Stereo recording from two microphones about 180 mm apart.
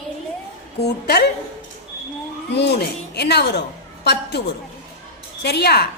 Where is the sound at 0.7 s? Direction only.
65° left (ahead or behind).